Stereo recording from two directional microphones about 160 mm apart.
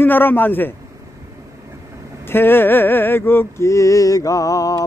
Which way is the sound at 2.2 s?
15° left (ahead or behind).